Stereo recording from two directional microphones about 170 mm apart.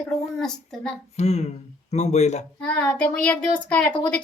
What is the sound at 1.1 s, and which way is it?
Speech, 40° left (ahead or behind).